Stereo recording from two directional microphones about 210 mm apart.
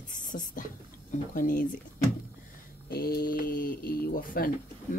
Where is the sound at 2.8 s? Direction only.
45° left (ahead or behind).